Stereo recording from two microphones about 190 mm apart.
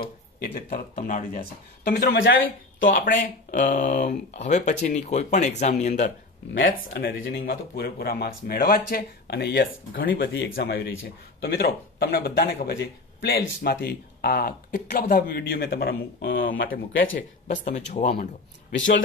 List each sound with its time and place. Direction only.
0.6 s speech: 50° left (ahead or behind)
2.8 s speech: 70° left (ahead or behind)
3.2 s speech: 40° left (ahead or behind)
6.5 s speech: 65° left (ahead or behind); by 17.1 s 50° left (ahead or behind)
17.6 s speech: 35° left (ahead or behind)